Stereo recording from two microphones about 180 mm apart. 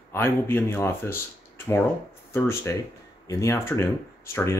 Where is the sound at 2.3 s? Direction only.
15° left (ahead or behind).